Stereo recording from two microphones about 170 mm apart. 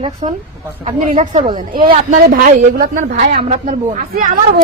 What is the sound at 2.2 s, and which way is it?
A woman's voice, 60° right (ahead or behind).